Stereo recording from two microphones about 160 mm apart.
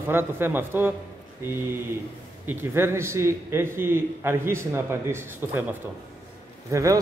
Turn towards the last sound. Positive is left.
turn(degrees=-20)  # may be behind; listen again after turning